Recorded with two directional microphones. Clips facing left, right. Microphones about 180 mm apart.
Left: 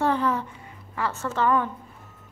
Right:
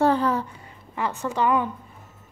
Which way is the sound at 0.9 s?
15° right (ahead or behind).